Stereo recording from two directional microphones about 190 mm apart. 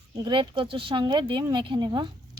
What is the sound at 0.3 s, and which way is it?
Speech, 25° right (ahead or behind).